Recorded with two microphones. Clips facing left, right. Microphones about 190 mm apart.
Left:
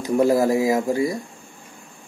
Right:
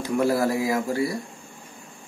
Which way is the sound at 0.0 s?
20° left (ahead or behind).